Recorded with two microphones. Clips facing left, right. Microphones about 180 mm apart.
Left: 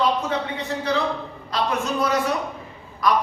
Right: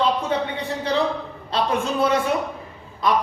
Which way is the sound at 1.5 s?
30° right (ahead or behind).